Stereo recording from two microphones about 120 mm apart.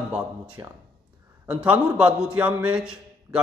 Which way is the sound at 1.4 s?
10° right (ahead or behind).